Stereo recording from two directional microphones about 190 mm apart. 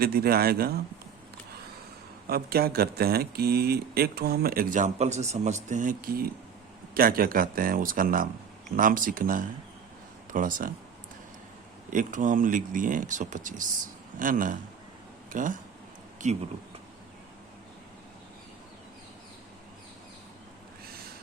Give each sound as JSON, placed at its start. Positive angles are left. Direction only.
{"t": 0.0, "sound": "speech", "side_deg": -55}
{"t": 2.2, "sound": "speech", "side_deg": -55}
{"t": 11.9, "sound": "speech", "side_deg": -45}